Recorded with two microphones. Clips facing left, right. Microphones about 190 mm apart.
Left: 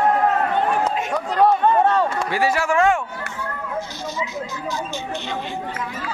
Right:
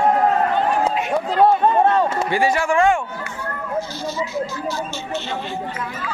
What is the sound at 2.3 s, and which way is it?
Speech, 5° left (ahead or behind).